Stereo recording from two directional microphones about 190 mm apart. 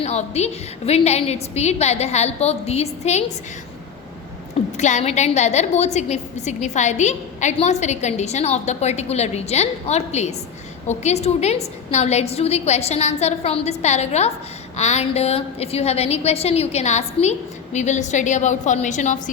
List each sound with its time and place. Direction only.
0.0 s a woman's voice: 35° left (ahead or behind)
4.8 s a woman's voice: 35° left (ahead or behind)